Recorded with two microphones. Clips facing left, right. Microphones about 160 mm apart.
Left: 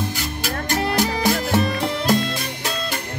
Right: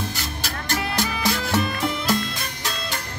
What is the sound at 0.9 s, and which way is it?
Music, 45° left (ahead or behind).